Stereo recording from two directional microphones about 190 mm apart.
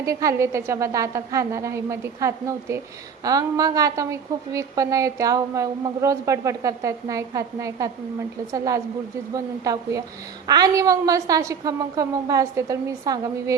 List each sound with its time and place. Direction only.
0.0 s a woman's voice: 15° right (ahead or behind)